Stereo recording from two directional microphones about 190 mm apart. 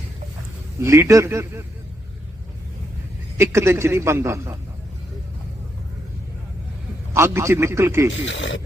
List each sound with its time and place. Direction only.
0.8 s a man's voice: 15° right (ahead or behind)
3.3 s a man's voice: 15° right (ahead or behind)
7.1 s a man's voice: 15° right (ahead or behind)
8.2 s speech: 75° left (ahead or behind)